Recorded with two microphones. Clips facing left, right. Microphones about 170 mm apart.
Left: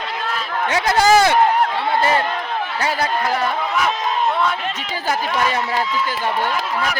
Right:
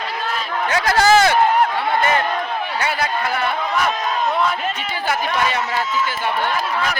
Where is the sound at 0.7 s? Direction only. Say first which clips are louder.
Even; 20° left (ahead or behind).